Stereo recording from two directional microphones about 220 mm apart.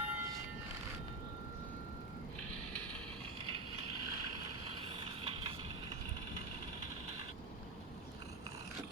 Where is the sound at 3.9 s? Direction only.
90° right.